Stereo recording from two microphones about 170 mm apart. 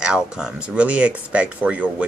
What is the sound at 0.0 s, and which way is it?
Speech, 5° right (ahead or behind).